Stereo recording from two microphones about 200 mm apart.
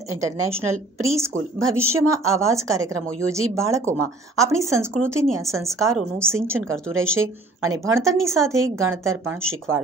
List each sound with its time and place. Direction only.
0.2 s speech: 15° right (ahead or behind)